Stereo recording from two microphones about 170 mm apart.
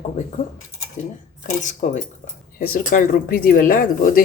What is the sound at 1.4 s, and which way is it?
Speech, 50° left (ahead or behind).